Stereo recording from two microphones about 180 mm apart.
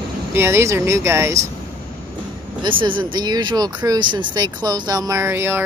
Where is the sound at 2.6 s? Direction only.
25° right (ahead or behind).